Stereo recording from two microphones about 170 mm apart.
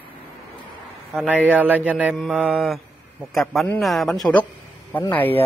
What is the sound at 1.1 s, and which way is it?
Mantra, 10° right (ahead or behind).